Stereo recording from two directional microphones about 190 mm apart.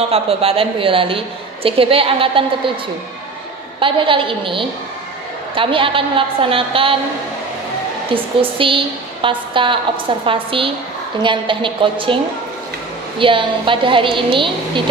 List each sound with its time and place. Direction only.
0.1 s a woman's voice: 30° right (ahead or behind)
3.8 s a woman's voice: 25° right (ahead or behind)
8.1 s a woman's voice: 30° right (ahead or behind)
13.2 s a woman's voice: 25° right (ahead or behind)